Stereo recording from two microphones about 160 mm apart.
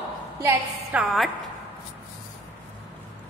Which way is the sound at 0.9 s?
Centre (ahead or behind).